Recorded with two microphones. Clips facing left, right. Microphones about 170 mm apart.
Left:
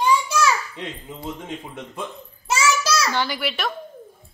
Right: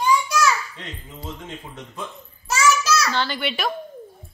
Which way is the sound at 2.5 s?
30° left (ahead or behind).